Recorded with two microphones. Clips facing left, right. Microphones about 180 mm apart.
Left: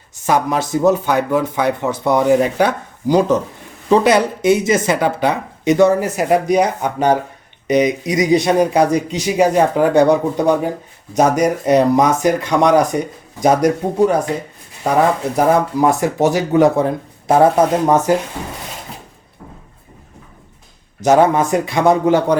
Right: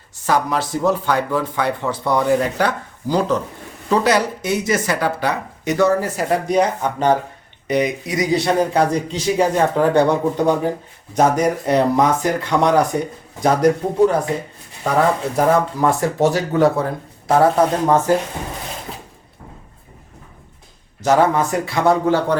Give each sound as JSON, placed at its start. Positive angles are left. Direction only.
{"t": 0.3, "sound": "speech", "side_deg": 20}
{"t": 15.4, "sound": "speech", "side_deg": 15}
{"t": 21.0, "sound": "speech", "side_deg": 20}